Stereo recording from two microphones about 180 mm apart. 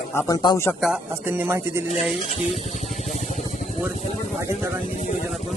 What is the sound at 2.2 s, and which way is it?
Speech, 40° left (ahead or behind).